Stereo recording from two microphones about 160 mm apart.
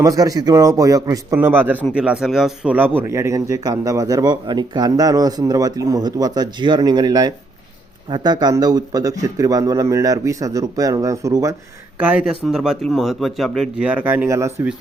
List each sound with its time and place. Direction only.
0.0 s speech: 20° right (ahead or behind)
11.9 s speech: 10° right (ahead or behind)